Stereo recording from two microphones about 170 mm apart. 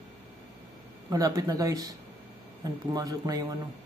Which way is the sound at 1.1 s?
20° right (ahead or behind).